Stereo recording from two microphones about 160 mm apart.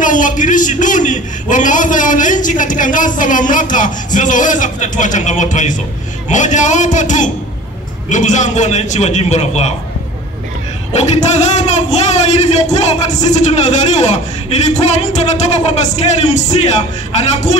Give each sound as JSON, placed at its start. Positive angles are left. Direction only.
{"t": 0.0, "sound": "speech", "side_deg": 55}
{"t": 10.9, "sound": "speech", "side_deg": 45}